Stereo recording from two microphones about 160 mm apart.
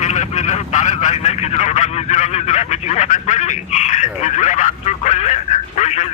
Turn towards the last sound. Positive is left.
turn(degrees=45)  # may be behind; listen again after turning